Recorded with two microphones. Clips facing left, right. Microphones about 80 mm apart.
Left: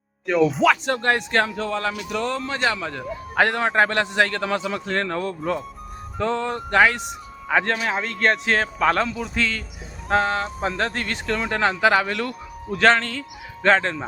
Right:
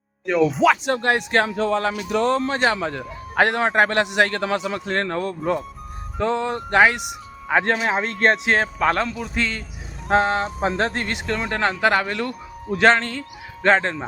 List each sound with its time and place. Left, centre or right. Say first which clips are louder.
0.3 s speech: right 1 dB; centre; by 2.9 s right
2.9 s speech: even; centre
3.6 s speech: right 1 dB; right
3.8 s a man's voice: right 2 dB; centre
10.1 s speech: right 2 dB; right
11.3 s a man's voice: left 1 dB; centre